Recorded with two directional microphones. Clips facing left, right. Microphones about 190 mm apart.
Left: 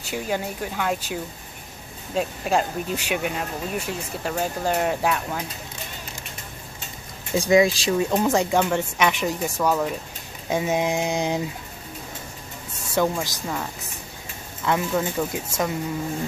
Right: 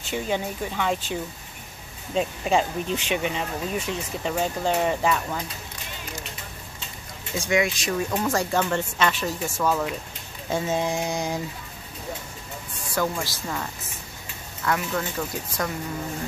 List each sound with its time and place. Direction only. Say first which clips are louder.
0.1 s speech: even; 5° left (ahead or behind)
7.3 s speech: left 6 dB; 35° left (ahead or behind)
8.2 s speech: left 4 dB; 20° left (ahead or behind)
12.9 s speech: left 4 dB; 20° left (ahead or behind)
14.7 s speech: left 3 dB; 20° left (ahead or behind)